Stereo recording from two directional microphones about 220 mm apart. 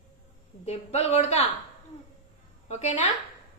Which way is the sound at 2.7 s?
30° left (ahead or behind).